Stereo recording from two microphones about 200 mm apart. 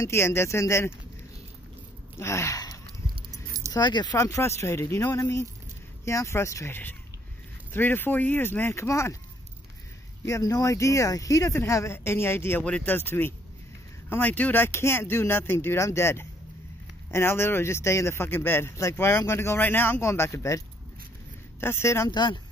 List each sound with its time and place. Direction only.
0.0 s a man's voice: 10° left (ahead or behind)
2.1 s a sound: 15° left (ahead or behind)
3.7 s a man's voice: 20° left (ahead or behind)
10.2 s a man's voice: 15° left (ahead or behind)